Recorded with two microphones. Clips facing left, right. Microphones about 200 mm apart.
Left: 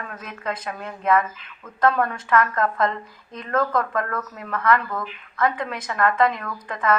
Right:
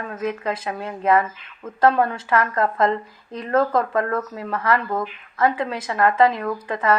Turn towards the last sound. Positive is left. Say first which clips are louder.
# right 7 dB
turn(degrees=-30)  # may be behind; listen again after turning